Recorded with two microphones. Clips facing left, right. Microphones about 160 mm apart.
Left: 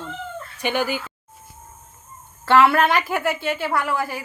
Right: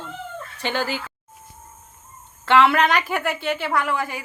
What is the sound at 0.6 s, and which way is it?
Speech, 15° left (ahead or behind).